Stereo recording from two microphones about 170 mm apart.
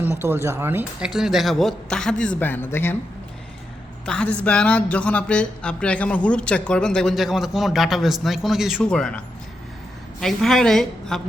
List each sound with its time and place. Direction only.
0.2 s speech: 15° right (ahead or behind); by 3.0 s 15° left (ahead or behind)
4.0 s speech: 5° left (ahead or behind)